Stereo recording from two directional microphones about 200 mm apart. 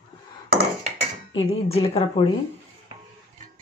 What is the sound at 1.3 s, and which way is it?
Speech, 30° left (ahead or behind).